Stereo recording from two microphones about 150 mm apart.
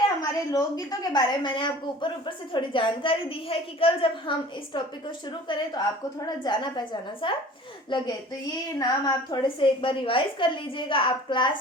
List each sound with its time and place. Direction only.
0.2 s a woman's voice: 25° left (ahead or behind)